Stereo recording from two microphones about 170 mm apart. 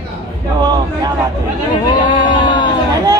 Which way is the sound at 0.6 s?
25° right (ahead or behind).